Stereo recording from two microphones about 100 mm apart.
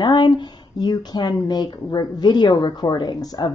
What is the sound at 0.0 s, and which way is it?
Speech, 50° left (ahead or behind).